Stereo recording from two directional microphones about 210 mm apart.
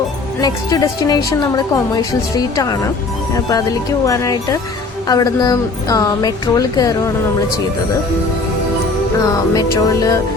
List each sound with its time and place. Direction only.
0.4 s speech: 15° left (ahead or behind)
9.2 s speech: 15° left (ahead or behind)